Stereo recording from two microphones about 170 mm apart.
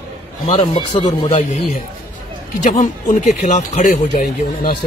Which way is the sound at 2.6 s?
50° left (ahead or behind).